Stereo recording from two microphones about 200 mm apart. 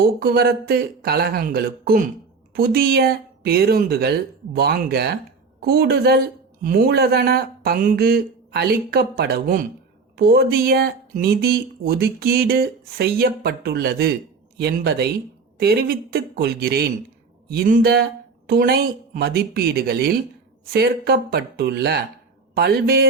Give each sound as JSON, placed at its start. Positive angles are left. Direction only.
{"t": 0.0, "sound": "speech", "side_deg": -50}